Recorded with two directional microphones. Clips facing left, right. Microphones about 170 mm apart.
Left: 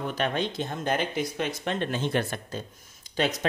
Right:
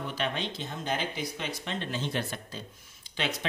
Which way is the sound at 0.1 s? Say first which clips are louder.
Left 4 dB; 50° left (ahead or behind).